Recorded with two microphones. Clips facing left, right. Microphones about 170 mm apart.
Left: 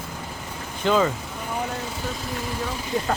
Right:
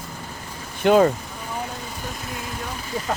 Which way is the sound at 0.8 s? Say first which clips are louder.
Right 5 dB; 55° right (ahead or behind).